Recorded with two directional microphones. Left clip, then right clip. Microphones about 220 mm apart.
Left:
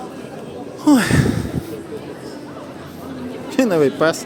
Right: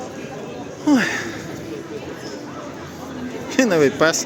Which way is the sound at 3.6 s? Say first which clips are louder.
Even; 10° left (ahead or behind).